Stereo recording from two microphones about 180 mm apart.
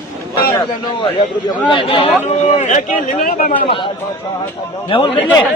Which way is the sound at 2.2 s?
40° left (ahead or behind).